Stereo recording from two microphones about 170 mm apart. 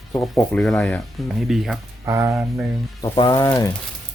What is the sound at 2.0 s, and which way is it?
Speech, 15° right (ahead or behind).